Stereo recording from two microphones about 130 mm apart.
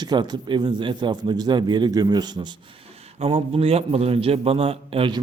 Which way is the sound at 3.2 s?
45° right (ahead or behind).